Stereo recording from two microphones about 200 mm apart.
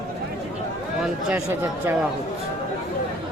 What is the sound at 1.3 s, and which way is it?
Speech, 10° right (ahead or behind).